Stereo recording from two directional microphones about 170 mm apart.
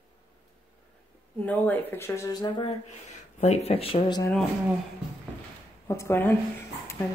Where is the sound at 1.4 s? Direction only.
10° left (ahead or behind); by 2.7 s 25° left (ahead or behind).